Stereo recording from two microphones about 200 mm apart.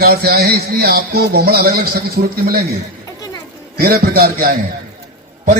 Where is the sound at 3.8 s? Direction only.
50° right (ahead or behind).